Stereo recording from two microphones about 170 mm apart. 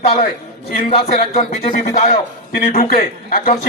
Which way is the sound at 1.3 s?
50° left (ahead or behind).